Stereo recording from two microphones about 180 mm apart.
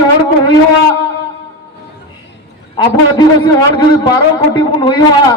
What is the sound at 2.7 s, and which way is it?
A man's voice, 25° left (ahead or behind).